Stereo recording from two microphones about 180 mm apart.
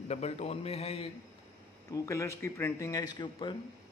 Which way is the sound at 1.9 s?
15° left (ahead or behind).